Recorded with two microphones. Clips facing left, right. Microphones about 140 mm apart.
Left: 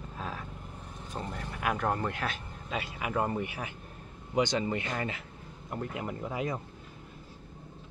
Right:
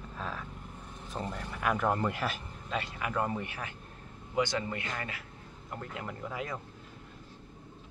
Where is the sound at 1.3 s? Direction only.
Centre (ahead or behind).